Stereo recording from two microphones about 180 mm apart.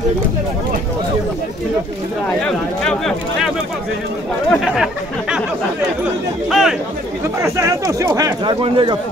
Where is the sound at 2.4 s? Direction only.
5° left (ahead or behind).